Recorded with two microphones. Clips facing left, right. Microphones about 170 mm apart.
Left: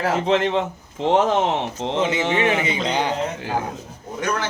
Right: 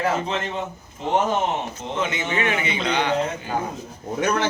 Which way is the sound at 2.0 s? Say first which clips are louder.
Left 4 dB; 30° left (ahead or behind).